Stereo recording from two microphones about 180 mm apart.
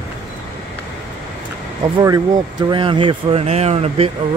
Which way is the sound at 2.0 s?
20° right (ahead or behind).